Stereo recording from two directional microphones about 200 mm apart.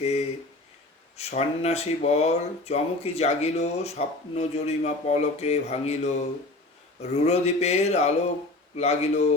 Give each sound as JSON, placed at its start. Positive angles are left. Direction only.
{"t": 0.0, "sound": "speech", "side_deg": 30}
{"t": 7.1, "sound": "speech", "side_deg": 35}